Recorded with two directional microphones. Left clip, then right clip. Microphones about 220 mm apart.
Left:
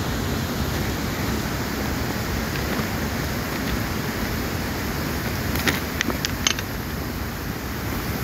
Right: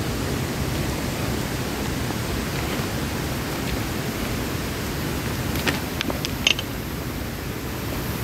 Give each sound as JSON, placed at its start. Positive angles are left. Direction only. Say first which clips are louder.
{"t": 5.7, "sound": "vehicle", "louder": "left 2 dB", "side_deg": 20}